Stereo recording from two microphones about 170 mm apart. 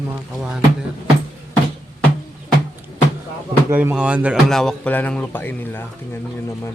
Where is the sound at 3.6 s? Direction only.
15° right (ahead or behind).